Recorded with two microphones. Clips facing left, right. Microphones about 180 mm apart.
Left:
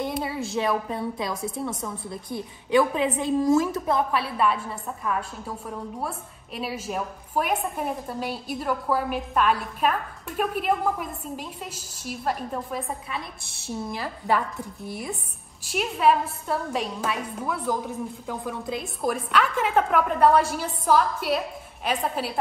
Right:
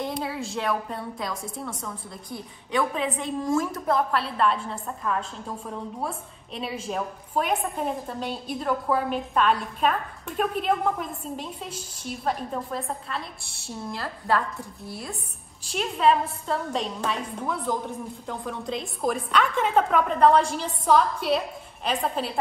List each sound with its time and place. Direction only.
0.0 s a sound: centre (ahead or behind)
0.5 s a woman's voice: 5° left (ahead or behind)
3.2 s a woman's voice: 5° left (ahead or behind)
13.1 s a woman's voice: 20° left (ahead or behind)
15.6 s a woman's voice: 5° left (ahead or behind)